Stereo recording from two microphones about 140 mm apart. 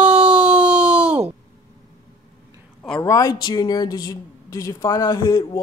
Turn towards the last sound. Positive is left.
turn(degrees=20)  # may be behind; listen again after turning